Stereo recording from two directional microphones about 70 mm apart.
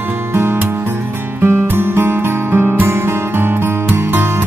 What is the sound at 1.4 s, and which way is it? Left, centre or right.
Music, right.